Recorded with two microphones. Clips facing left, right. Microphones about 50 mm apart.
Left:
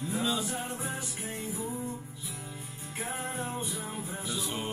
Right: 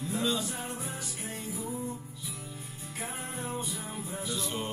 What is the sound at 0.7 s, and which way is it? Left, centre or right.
Music, left.